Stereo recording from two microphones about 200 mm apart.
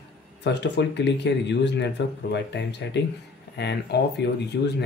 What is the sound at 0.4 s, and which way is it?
Speech, 60° left (ahead or behind).